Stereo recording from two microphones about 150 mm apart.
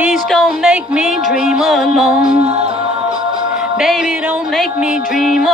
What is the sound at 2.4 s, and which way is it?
Music, 45° right (ahead or behind).